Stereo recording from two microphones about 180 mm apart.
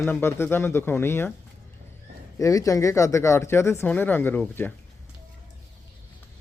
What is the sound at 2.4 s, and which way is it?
Speech, 20° left (ahead or behind).